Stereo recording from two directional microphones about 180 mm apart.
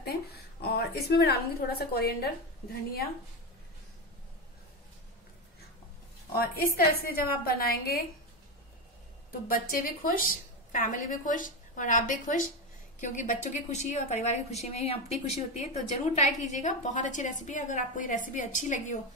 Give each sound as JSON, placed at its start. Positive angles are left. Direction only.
{"t": 0.6, "sound": "a woman's voice", "side_deg": 65}
{"t": 6.3, "sound": "a woman's voice", "side_deg": 55}
{"t": 9.5, "sound": "a woman's voice", "side_deg": 50}